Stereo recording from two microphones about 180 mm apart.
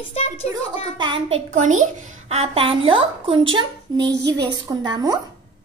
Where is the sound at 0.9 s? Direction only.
30° right (ahead or behind).